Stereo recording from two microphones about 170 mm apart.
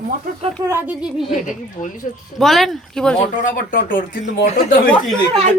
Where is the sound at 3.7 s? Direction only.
55° left (ahead or behind).